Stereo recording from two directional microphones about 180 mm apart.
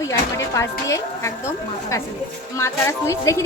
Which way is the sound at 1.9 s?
20° left (ahead or behind).